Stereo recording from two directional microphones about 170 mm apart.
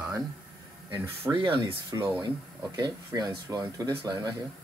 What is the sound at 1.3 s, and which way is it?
Speech, 30° right (ahead or behind).